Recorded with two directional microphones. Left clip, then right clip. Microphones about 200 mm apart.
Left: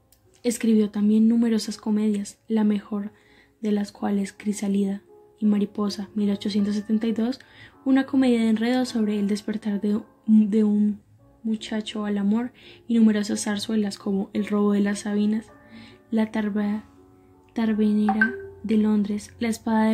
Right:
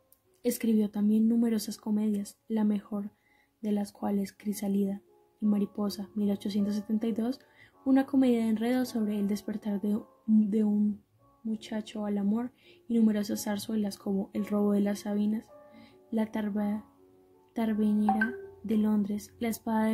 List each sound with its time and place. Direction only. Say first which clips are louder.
0.4 s speech: left 6 dB; 20° right (ahead or behind)